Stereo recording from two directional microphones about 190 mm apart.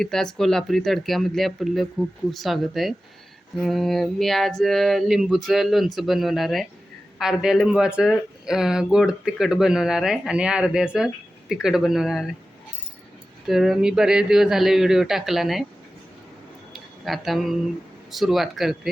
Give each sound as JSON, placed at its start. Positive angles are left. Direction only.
{"t": 0.0, "sound": "speech", "side_deg": 0}
{"t": 13.5, "sound": "speech", "side_deg": 0}
{"t": 16.7, "sound": "a sound", "side_deg": 0}
{"t": 18.1, "sound": "speech", "side_deg": 0}